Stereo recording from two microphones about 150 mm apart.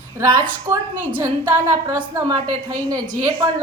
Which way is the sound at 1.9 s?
25° right (ahead or behind).